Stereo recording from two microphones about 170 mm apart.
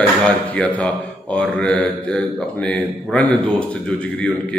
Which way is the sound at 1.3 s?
5° left (ahead or behind).